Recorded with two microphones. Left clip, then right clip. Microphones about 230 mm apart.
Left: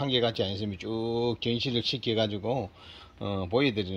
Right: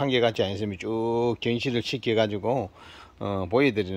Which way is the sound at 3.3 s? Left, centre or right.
Right.